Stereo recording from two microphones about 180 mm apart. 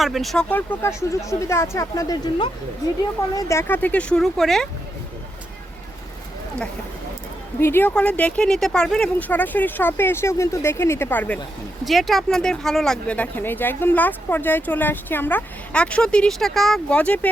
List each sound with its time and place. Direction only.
0.0 s speech: centre (ahead or behind)
7.6 s speech: 10° left (ahead or behind)